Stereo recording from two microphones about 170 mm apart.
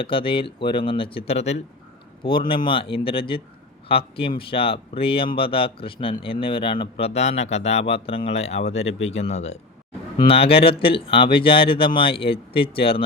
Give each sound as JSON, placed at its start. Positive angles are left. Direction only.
{"t": 0.0, "sound": "speech", "side_deg": 30}
{"t": 2.6, "sound": "speech", "side_deg": 30}